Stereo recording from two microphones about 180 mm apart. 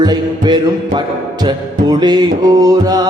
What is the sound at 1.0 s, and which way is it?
Music, 25° right (ahead or behind).